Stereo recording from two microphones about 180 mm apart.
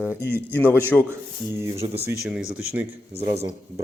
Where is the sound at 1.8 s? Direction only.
25° right (ahead or behind).